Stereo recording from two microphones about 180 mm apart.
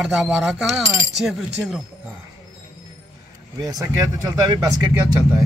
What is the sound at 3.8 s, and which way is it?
Speech, 20° right (ahead or behind).